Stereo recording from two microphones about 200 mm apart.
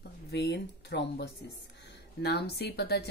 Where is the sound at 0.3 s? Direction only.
55° left (ahead or behind).